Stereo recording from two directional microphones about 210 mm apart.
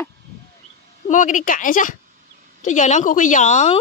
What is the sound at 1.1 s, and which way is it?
A woman's voice, 35° left (ahead or behind).